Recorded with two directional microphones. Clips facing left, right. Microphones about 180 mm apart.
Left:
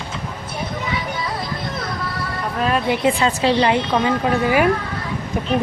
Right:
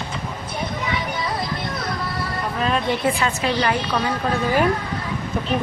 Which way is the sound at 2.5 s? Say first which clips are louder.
Left 3 dB; 5° left (ahead or behind).